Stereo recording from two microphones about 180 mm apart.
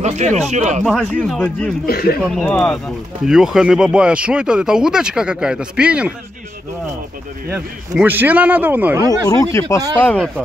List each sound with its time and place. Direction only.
0.0 s speech: 40° right (ahead or behind)
0.8 s speech: centre (ahead or behind)
1.9 s speech: 55° left (ahead or behind)
2.5 s speech: 5° left (ahead or behind)
7.4 s speech: 10° right (ahead or behind)
9.3 s speech: 15° left (ahead or behind)